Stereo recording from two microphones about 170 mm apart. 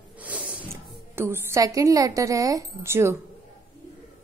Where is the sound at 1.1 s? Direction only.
15° right (ahead or behind).